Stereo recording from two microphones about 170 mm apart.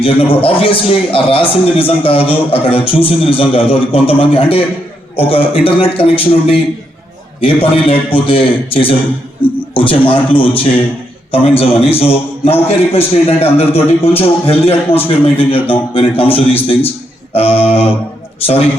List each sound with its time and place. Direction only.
0.0 s a man's voice: 35° left (ahead or behind)